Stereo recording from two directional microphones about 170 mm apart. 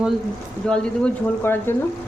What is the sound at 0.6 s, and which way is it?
Speech, 5° left (ahead or behind).